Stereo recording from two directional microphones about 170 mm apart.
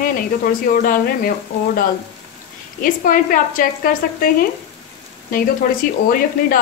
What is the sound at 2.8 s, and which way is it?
Speech, 55° left (ahead or behind).